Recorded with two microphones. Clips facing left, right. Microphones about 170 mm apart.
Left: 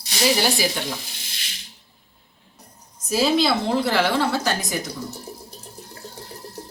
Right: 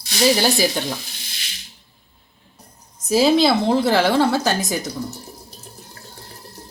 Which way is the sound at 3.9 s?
40° right (ahead or behind).